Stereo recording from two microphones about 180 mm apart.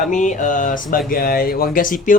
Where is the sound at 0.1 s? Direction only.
45° left (ahead or behind).